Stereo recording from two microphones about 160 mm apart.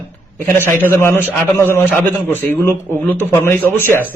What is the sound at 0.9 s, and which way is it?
Speech, 15° left (ahead or behind).